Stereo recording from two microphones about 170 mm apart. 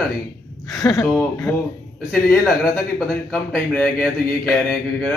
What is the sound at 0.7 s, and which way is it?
Speech, 20° left (ahead or behind).